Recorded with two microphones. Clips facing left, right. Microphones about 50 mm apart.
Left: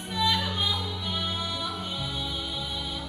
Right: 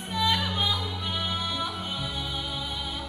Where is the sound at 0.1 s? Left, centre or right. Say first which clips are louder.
Even; right.